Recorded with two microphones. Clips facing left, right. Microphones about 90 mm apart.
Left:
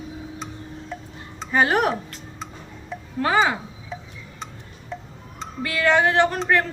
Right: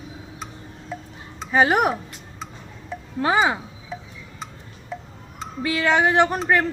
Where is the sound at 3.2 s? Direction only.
20° right (ahead or behind).